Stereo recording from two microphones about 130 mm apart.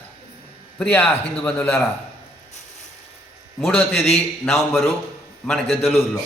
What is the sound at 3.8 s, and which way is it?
Speech, 15° left (ahead or behind).